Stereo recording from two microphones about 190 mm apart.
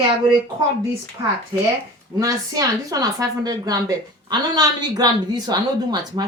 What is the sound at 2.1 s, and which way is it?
Speech, 20° right (ahead or behind).